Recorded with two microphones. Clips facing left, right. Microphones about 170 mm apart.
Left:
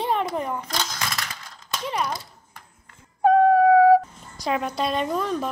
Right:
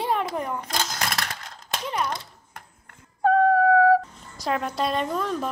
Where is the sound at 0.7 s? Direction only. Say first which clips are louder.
Right 1 dB; 50° right (ahead or behind).